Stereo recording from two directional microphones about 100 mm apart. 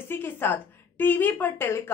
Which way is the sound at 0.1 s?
20° left (ahead or behind).